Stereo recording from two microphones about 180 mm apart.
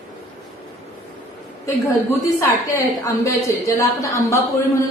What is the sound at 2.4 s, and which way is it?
A woman's voice, 20° left (ahead or behind).